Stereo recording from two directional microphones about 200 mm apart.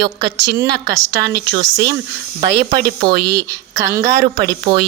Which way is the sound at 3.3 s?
15° right (ahead or behind).